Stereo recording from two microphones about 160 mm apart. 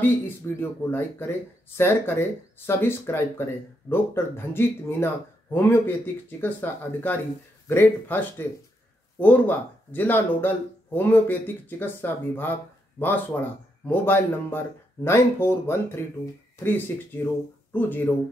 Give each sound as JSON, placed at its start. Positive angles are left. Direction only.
{"t": 0.6, "sound": "speech", "side_deg": 15}